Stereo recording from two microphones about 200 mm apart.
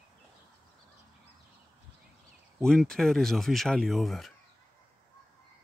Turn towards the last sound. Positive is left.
turn(degrees=0)  # may be behind; listen again after turning